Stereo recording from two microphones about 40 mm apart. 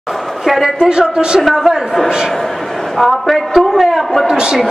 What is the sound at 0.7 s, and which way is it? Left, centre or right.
Speech, right.